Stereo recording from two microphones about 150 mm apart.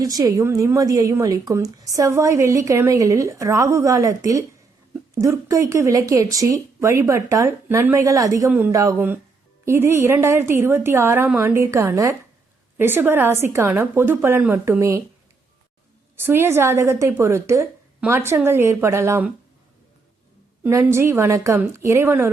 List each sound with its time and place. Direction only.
0.0 s a woman's voice: 25° right (ahead or behind)
16.1 s a woman's voice: 15° right (ahead or behind)
20.7 s a woman's voice: 20° right (ahead or behind)